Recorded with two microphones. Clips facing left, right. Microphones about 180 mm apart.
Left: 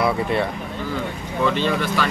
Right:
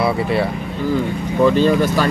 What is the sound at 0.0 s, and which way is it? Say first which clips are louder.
Speech: right 3 dB; 5° right (ahead or behind).